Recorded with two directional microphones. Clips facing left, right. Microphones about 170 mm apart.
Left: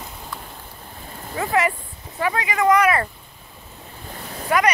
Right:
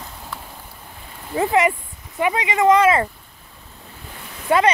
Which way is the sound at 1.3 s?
25° right (ahead or behind).